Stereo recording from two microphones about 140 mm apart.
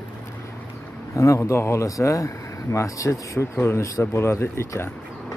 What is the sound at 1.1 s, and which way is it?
Speech, 20° left (ahead or behind).